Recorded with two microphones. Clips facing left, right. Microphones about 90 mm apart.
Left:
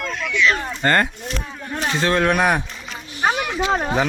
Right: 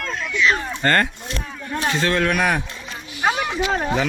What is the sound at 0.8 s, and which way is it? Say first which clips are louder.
Speech: left 1 dB; 15° left (ahead or behind).